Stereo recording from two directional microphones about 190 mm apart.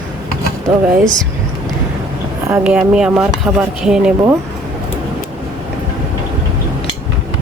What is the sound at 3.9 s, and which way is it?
Speech, 5° right (ahead or behind).